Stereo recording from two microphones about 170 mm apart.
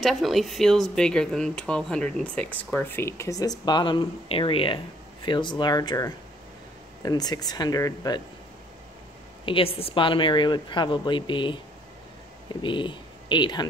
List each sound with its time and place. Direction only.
0.0 s speech: centre (ahead or behind); by 8.2 s 20° left (ahead or behind)
9.5 s speech: 35° left (ahead or behind)
12.6 s speech: 30° left (ahead or behind)